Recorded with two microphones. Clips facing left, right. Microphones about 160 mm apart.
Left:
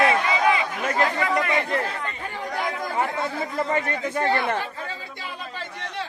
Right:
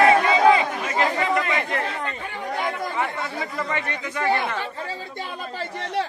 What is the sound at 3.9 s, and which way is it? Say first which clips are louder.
Speech: left 4 dB; 45° left (ahead or behind).